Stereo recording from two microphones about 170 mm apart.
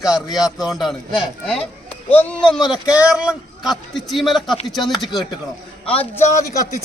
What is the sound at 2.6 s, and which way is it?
Speech, 25° left (ahead or behind).